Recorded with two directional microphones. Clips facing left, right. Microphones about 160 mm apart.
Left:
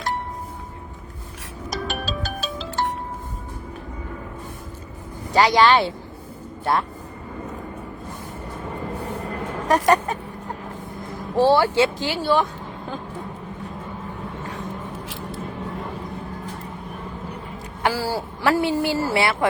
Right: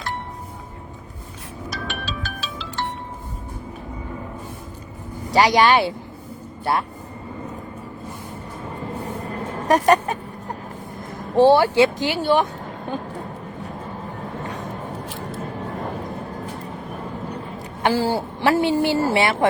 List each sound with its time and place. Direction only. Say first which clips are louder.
1.7 s music: left 4 dB; 40° left (ahead or behind)
5.3 s speech: even; 15° right (ahead or behind)
9.6 s speech: right 2 dB; 15° right (ahead or behind)
11.3 s speech: right 3 dB; 15° right (ahead or behind)
17.8 s speech: right 3 dB; 25° right (ahead or behind)